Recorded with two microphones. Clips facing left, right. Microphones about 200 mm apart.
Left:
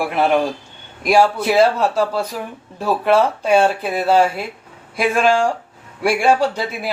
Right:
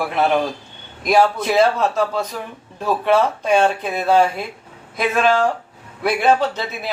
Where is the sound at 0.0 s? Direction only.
10° left (ahead or behind).